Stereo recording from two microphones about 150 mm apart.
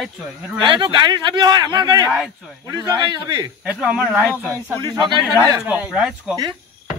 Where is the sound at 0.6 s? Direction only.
30° right (ahead or behind).